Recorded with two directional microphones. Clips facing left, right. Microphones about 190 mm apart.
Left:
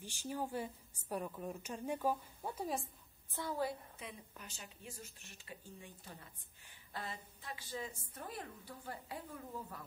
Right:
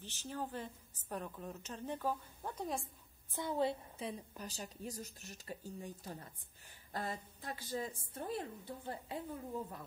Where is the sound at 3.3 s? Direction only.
20° right (ahead or behind).